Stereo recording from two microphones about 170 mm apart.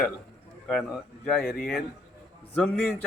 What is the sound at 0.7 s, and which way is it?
Speech, 5° left (ahead or behind).